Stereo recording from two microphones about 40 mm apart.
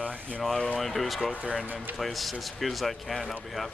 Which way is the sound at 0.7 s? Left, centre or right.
Centre.